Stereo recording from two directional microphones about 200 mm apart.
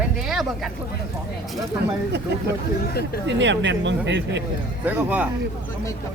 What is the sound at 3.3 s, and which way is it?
Speech, 65° right (ahead or behind).